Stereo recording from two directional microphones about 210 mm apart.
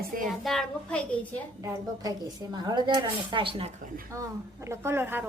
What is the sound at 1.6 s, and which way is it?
Speech, 15° right (ahead or behind).